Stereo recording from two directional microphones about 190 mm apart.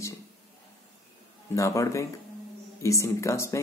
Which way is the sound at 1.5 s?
15° left (ahead or behind).